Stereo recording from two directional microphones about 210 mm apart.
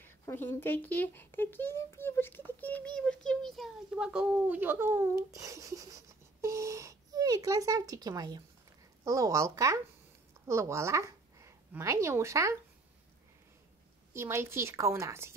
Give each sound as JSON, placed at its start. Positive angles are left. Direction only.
{"t": 0.0, "sound": "a woman's voice", "side_deg": 10}
{"t": 14.1, "sound": "a woman's voice", "side_deg": -10}